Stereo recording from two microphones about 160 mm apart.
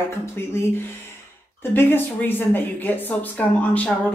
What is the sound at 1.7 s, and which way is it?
A woman's voice, 15° left (ahead or behind).